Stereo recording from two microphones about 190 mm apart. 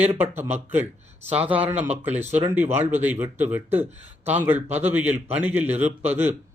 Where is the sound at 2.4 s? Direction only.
10° right (ahead or behind).